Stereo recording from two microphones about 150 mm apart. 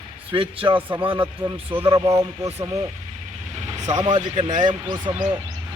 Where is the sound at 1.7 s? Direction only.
15° right (ahead or behind).